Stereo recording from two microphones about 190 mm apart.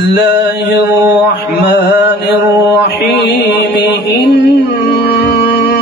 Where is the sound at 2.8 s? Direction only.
60° left (ahead or behind).